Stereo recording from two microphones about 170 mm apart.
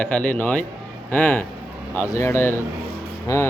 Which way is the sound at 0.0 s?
10° left (ahead or behind).